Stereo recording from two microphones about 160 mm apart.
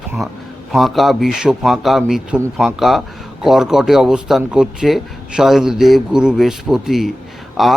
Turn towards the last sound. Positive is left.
turn(degrees=0)  # may be behind; listen again after turning